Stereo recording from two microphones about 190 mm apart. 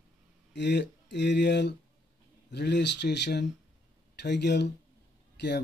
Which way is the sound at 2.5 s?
65° left (ahead or behind).